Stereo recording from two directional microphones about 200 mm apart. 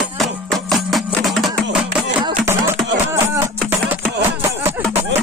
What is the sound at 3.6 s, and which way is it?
Music, 5° right (ahead or behind).